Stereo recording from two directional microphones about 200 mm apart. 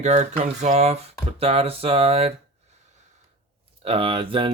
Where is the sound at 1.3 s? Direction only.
30° right (ahead or behind).